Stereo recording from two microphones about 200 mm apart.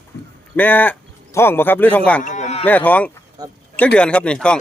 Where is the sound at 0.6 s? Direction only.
10° left (ahead or behind).